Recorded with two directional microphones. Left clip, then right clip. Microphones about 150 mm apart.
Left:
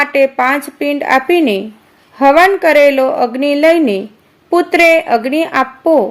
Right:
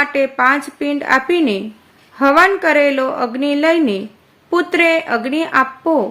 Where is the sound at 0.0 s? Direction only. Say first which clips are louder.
Left 3 dB; 30° left (ahead or behind).